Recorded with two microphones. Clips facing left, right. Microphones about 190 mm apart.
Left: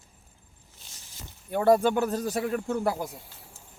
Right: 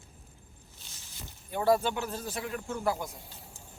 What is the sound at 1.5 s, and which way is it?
Speech, 50° left (ahead or behind).